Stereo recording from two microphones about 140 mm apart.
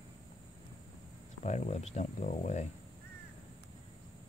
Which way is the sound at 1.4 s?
55° left (ahead or behind).